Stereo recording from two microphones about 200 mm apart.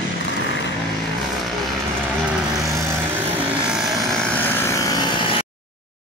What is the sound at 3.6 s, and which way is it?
Vehicle, centre (ahead or behind).